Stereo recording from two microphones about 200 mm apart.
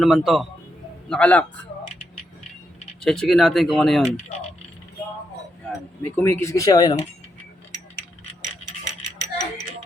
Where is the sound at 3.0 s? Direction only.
Centre (ahead or behind).